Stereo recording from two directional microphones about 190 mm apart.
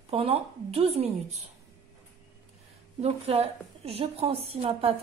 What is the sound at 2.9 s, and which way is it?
A woman's voice, 35° right (ahead or behind).